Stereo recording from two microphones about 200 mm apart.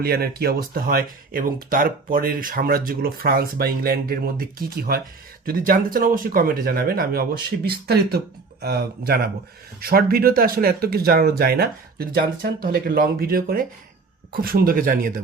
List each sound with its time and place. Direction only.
0.0 s speech: 50° right (ahead or behind)